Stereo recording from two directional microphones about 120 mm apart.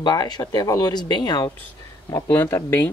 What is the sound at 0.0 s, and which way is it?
Speech, 35° left (ahead or behind).